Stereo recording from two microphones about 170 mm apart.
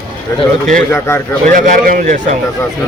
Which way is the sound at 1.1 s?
15° left (ahead or behind).